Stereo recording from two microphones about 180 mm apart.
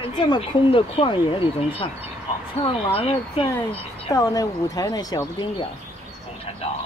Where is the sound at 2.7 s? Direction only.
30° left (ahead or behind).